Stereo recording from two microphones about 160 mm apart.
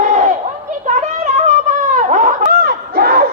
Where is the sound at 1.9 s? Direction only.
50° right (ahead or behind); by 3.2 s 70° right (ahead or behind).